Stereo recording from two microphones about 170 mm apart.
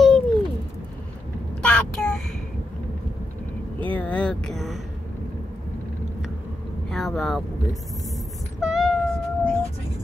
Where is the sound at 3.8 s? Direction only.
10° left (ahead or behind).